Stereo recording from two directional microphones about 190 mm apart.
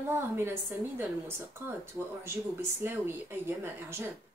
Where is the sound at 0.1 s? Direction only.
10° right (ahead or behind).